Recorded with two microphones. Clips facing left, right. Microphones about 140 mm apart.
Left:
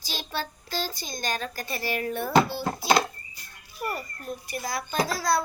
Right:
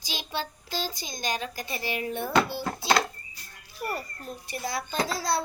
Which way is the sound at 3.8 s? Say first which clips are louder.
Left 1 dB; 30° right (ahead or behind).